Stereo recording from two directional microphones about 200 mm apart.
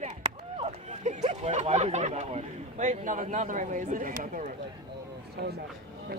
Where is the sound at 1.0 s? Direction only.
35° right (ahead or behind).